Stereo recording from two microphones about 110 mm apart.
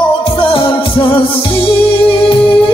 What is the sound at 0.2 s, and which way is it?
Music, 50° left (ahead or behind).